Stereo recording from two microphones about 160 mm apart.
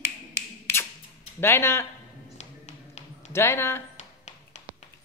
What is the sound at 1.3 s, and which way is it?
Speech, 15° left (ahead or behind).